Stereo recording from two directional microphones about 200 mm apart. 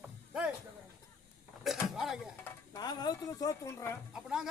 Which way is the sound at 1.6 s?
Centre (ahead or behind).